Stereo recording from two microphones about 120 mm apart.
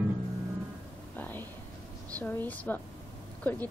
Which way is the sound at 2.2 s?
15° left (ahead or behind).